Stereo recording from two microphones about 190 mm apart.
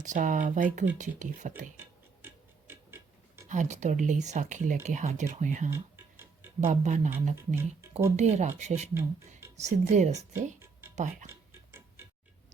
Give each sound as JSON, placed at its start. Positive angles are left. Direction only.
{"t": 0.0, "sound": "speech", "side_deg": -40}
{"t": 1.7, "sound": "tick-tock", "side_deg": -10}
{"t": 3.5, "sound": "speech", "side_deg": -40}
{"t": 5.7, "sound": "tick-tock", "side_deg": -10}
{"t": 6.7, "sound": "speech", "side_deg": -40}
{"t": 7.3, "sound": "speech", "side_deg": -15}
{"t": 8.1, "sound": "speech", "side_deg": -35}
{"t": 10.6, "sound": "music", "side_deg": -10}
{"t": 10.9, "sound": "speech", "side_deg": -40}
{"t": 11.3, "sound": "tick-tock", "side_deg": -15}